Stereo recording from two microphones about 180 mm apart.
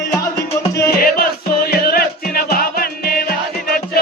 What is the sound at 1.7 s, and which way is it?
Music, 55° left (ahead or behind).